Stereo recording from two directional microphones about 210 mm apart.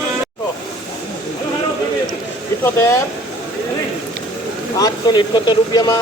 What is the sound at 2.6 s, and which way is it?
Speech, 10° left (ahead or behind).